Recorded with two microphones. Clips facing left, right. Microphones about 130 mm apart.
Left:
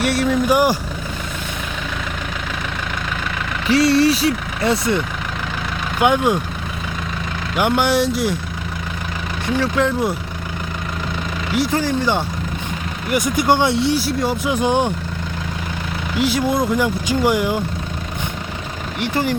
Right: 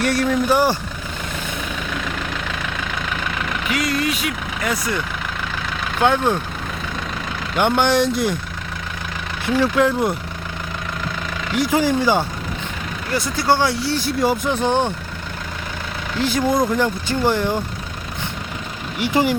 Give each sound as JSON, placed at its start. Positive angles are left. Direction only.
{"t": 0.0, "sound": "speech", "side_deg": 5}
{"t": 0.5, "sound": "speech", "side_deg": 15}
{"t": 3.7, "sound": "speech", "side_deg": 30}
{"t": 6.0, "sound": "speech", "side_deg": 15}
{"t": 7.5, "sound": "speech", "side_deg": 5}
{"t": 9.7, "sound": "speech", "side_deg": 0}
{"t": 11.7, "sound": "speech", "side_deg": -10}
{"t": 13.1, "sound": "speech", "side_deg": 15}
{"t": 13.9, "sound": "speech", "side_deg": 5}
{"t": 14.5, "sound": "speech", "side_deg": 10}
{"t": 16.1, "sound": "speech", "side_deg": 5}
{"t": 18.9, "sound": "speech", "side_deg": -10}